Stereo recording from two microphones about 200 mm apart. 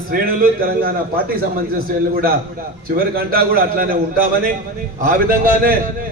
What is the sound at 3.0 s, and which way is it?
A man's voice, 50° right (ahead or behind).